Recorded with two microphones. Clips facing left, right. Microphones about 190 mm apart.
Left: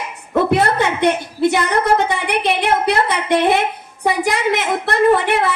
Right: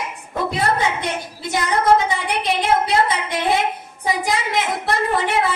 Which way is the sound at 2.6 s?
65° left (ahead or behind).